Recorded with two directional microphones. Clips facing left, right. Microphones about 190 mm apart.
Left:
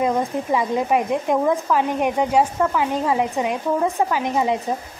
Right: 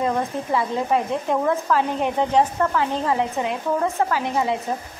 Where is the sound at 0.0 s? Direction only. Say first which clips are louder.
Left 2 dB; 15° left (ahead or behind).